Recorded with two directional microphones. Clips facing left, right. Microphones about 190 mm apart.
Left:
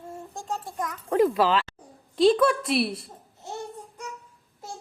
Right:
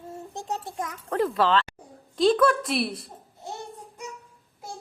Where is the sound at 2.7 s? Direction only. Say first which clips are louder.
Left 2 dB; centre (ahead or behind).